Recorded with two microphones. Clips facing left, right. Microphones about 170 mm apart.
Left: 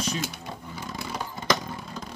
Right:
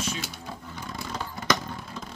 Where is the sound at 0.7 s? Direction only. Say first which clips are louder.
Left 1 dB; 5° left (ahead or behind).